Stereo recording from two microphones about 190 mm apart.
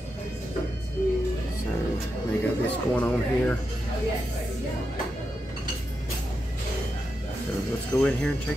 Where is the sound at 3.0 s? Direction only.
10° left (ahead or behind).